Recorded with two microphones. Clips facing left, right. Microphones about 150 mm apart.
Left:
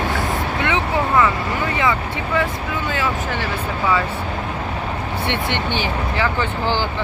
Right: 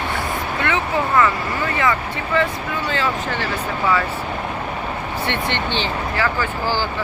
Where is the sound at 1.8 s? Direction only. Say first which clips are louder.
Even; 10° left (ahead or behind).